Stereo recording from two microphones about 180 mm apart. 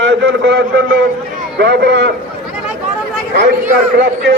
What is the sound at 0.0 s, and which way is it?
A man's voice, 80° right.